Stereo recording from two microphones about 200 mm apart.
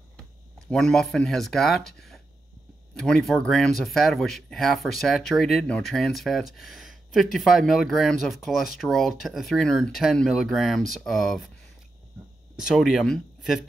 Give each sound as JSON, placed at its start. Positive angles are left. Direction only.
{"t": 0.7, "sound": "speech", "side_deg": 5}
{"t": 12.5, "sound": "speech", "side_deg": 0}